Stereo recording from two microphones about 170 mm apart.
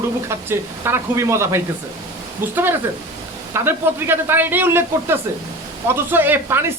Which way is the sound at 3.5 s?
15° right (ahead or behind).